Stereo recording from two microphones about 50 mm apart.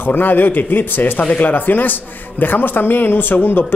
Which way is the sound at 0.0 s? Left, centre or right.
Left.